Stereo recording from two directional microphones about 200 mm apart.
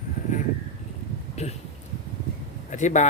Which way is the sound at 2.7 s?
35° left (ahead or behind).